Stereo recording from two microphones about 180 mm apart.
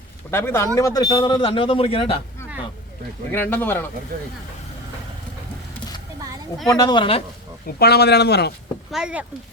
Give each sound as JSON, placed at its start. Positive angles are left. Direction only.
{"t": 0.3, "sound": "a man's voice", "side_deg": 15}
{"t": 3.3, "sound": "speech", "side_deg": 10}
{"t": 6.7, "sound": "a man's voice", "side_deg": 20}
{"t": 7.8, "sound": "speech", "side_deg": 65}
{"t": 8.9, "sound": "speech", "side_deg": -5}